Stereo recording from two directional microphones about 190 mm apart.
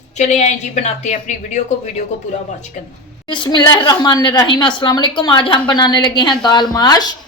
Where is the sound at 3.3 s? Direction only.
25° left (ahead or behind).